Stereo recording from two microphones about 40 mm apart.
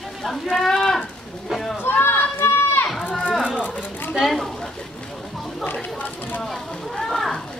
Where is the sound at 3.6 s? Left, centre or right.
Left.